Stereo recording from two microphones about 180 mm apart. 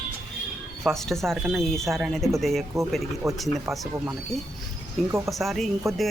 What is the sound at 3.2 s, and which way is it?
Speech, 15° right (ahead or behind).